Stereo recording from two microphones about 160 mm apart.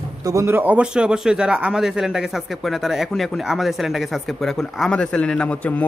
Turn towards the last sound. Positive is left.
turn(degrees=10)  # may be behind; listen again after turning